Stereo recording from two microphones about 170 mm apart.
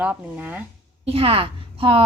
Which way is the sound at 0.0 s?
10° right (ahead or behind).